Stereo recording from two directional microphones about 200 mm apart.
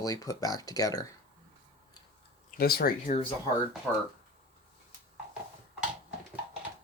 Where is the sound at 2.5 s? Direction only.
50° left (ahead or behind).